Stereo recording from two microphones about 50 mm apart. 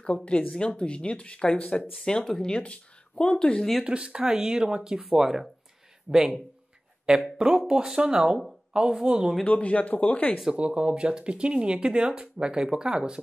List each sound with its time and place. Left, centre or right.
0.0 s speech: left
3.8 s speech: centre
7.3 s speech: centre
9.5 s speech: left
10.5 s speech: right